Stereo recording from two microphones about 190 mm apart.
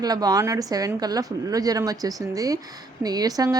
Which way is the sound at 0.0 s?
20° right (ahead or behind).